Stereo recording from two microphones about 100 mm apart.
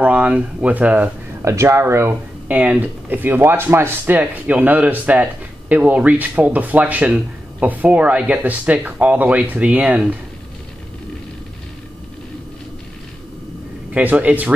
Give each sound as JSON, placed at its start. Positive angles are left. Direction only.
{"t": 0.0, "sound": "speech", "side_deg": -15}
{"t": 1.4, "sound": "speech", "side_deg": -30}
{"t": 13.9, "sound": "speech", "side_deg": -15}